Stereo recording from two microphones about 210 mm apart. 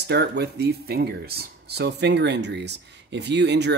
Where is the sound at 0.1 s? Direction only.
50° right (ahead or behind).